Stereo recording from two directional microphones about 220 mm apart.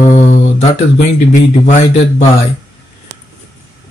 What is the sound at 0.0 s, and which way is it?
Mantra, 35° left (ahead or behind).